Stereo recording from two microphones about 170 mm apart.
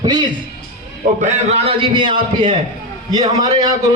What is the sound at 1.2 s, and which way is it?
A man's voice, 35° right (ahead or behind).